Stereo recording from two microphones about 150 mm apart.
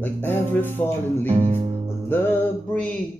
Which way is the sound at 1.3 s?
40° right (ahead or behind).